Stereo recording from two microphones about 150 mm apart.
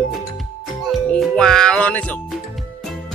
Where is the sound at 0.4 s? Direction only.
Centre (ahead or behind).